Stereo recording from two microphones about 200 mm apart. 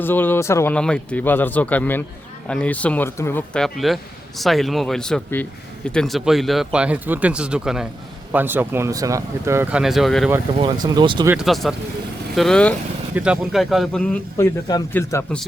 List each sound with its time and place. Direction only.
0.0 s speech: 10° left (ahead or behind)
10.8 s speech: 25° right (ahead or behind)
11.3 s speech: centre (ahead or behind)